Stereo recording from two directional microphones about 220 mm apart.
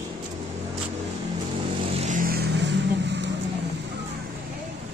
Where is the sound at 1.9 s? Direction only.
35° right (ahead or behind); by 3.3 s 55° right (ahead or behind).